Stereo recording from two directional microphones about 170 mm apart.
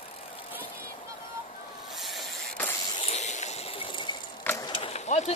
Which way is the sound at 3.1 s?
45° left (ahead or behind).